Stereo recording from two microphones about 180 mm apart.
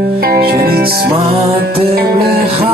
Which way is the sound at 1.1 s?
30° right (ahead or behind).